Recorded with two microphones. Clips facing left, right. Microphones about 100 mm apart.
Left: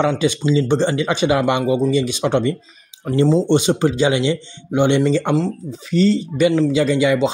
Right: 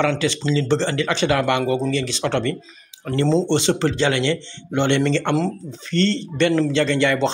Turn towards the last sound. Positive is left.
turn(degrees=10)  # may be behind; listen again after turning